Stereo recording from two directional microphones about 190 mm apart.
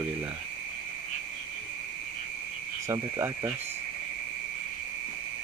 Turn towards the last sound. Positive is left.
turn(degrees=-15)  # may be behind; listen again after turning